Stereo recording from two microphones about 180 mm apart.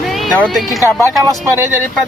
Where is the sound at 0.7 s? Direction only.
15° left (ahead or behind).